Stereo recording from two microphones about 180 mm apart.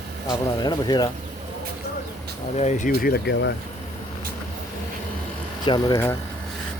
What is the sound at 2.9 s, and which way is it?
Speech, 60° left (ahead or behind).